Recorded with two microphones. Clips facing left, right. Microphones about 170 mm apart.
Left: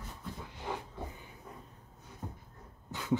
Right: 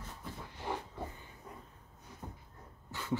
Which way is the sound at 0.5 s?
15° left (ahead or behind).